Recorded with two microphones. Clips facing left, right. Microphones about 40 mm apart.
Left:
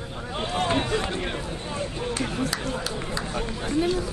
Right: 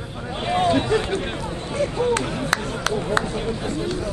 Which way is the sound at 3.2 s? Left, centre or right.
Right.